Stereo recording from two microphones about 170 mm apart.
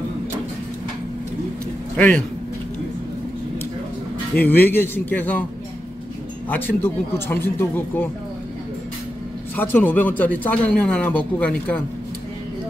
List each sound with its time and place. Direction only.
2.0 s speech: 5° left (ahead or behind)
4.4 s speech: 10° left (ahead or behind)
6.5 s speech: 10° left (ahead or behind)
9.6 s speech: 10° left (ahead or behind)